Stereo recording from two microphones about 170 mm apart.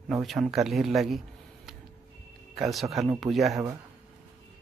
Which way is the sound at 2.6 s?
Centre (ahead or behind).